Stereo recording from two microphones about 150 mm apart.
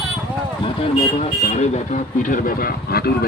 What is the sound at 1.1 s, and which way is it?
Speech, 45° left (ahead or behind).